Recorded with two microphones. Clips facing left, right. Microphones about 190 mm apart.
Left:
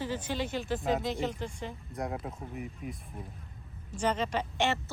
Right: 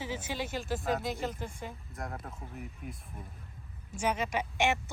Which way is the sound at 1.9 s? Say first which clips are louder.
Left 9 dB; 20° left (ahead or behind).